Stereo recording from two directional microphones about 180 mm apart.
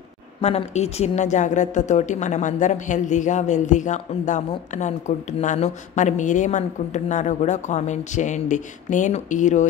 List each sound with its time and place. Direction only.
0.4 s a woman's voice: 35° left (ahead or behind)